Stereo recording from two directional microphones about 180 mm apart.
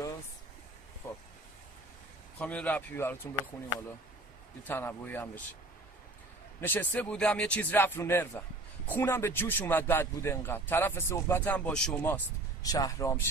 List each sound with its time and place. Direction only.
1.0 s vehicle: 15° left (ahead or behind)
2.3 s speech: 5° left (ahead or behind)
4.6 s speech: 10° left (ahead or behind)
6.6 s speech: 10° left (ahead or behind)
12.6 s speech: 20° left (ahead or behind)